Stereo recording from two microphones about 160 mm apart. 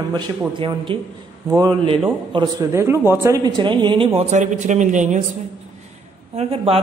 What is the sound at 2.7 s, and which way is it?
A man's voice, 15° right (ahead or behind).